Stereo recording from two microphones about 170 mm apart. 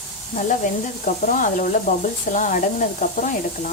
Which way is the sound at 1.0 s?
50° left (ahead or behind).